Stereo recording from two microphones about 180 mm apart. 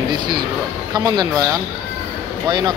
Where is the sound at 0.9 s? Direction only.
20° right (ahead or behind).